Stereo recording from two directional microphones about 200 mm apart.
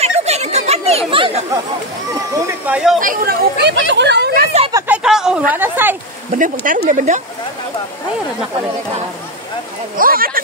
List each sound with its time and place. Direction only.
0.0 s chatter: 35° right (ahead or behind)
2.3 s speech: 10° right (ahead or behind)
3.0 s speech: 45° right (ahead or behind)
4.7 s a sound: 10° right (ahead or behind)
5.5 s speech: 10° right (ahead or behind)
6.3 s speech: 40° right (ahead or behind)
9.9 s speech: 45° right (ahead or behind)